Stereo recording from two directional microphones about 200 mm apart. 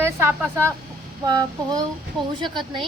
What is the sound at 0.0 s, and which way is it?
A woman's voice, 15° right (ahead or behind).